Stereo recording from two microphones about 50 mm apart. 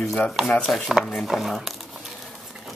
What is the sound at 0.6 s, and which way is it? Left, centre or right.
Speech, centre.